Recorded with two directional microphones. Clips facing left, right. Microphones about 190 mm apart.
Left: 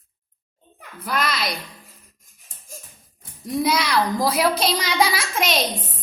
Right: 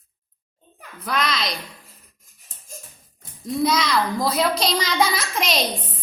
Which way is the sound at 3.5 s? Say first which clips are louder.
Even; 10° left (ahead or behind).